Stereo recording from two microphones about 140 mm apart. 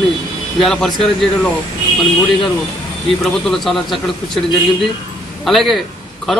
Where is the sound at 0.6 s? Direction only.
5° left (ahead or behind).